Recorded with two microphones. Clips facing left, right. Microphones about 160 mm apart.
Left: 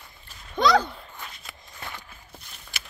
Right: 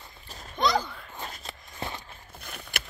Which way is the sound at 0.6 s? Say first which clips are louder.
Left 5 dB; 80° left.